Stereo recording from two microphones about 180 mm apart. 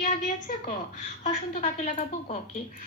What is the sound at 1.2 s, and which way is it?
A woman's voice, 45° left (ahead or behind).